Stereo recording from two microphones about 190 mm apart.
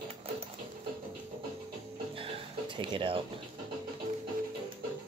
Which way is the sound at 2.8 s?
25° right (ahead or behind).